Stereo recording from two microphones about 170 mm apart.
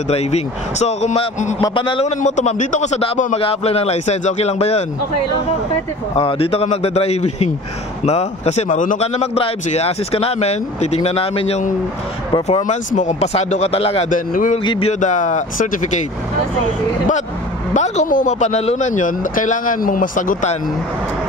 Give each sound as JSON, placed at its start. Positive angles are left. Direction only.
{"t": 0.1, "sound": "speech", "side_deg": 40}
{"t": 6.1, "sound": "speech", "side_deg": 35}
{"t": 14.0, "sound": "speech", "side_deg": 50}
{"t": 14.6, "sound": "a sound", "side_deg": 30}
{"t": 14.9, "sound": "speech", "side_deg": 45}
{"t": 17.7, "sound": "speech", "side_deg": 45}